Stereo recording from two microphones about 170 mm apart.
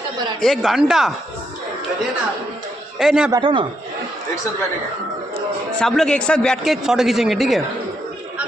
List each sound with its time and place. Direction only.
0.4 s a man's voice: centre (ahead or behind)
3.0 s a man's voice: 5° right (ahead or behind)
3.3 s a man's voice: 30° right (ahead or behind)
5.8 s a man's voice: 5° left (ahead or behind)